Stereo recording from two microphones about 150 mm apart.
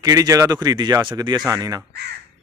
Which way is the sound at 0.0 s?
25° right (ahead or behind).